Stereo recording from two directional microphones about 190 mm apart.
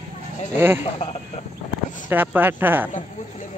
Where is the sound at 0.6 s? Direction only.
10° right (ahead or behind).